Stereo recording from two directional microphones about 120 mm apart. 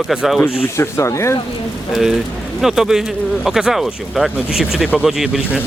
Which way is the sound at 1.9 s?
5° right (ahead or behind).